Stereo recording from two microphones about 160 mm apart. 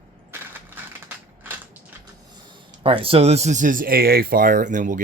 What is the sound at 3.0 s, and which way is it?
Speech, 40° right (ahead or behind).